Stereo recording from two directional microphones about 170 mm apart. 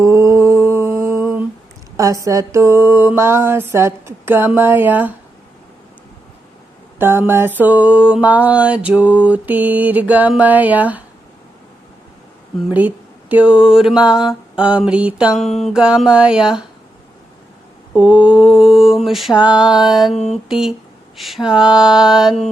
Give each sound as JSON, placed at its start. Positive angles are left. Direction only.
{"t": 0.0, "sound": "mantra", "side_deg": -15}
{"t": 7.0, "sound": "mantra", "side_deg": -15}
{"t": 12.7, "sound": "mantra", "side_deg": -10}
{"t": 17.9, "sound": "mantra", "side_deg": -5}